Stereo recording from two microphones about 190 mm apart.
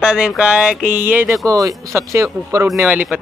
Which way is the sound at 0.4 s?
5° right (ahead or behind).